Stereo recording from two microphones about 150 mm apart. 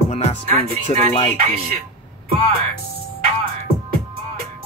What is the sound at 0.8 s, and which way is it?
Music, 40° left (ahead or behind).